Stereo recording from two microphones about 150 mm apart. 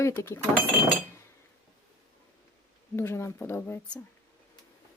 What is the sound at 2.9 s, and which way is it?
Speech, 15° left (ahead or behind).